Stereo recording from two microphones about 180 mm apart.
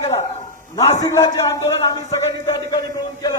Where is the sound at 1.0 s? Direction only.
15° left (ahead or behind).